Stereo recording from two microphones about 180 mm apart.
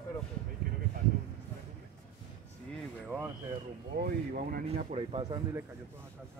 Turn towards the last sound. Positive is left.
turn(degrees=-35)  # may be behind; listen again after turning